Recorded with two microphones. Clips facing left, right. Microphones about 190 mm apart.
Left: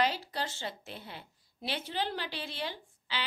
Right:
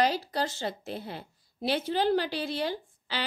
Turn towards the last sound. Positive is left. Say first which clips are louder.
# right 5 dB
turn(degrees=-40)  # may be behind; listen again after turning